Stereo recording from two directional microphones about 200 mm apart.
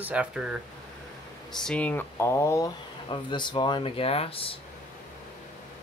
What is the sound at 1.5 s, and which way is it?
Speech, 5° left (ahead or behind).